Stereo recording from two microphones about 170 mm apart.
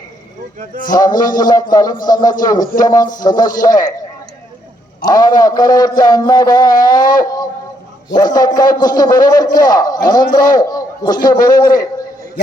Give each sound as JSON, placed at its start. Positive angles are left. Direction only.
{"t": 0.9, "sound": "a man's voice", "side_deg": 20}
{"t": 5.0, "sound": "a man's voice", "side_deg": 20}